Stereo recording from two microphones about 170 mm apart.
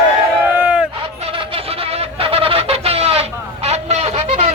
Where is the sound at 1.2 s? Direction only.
35° right (ahead or behind).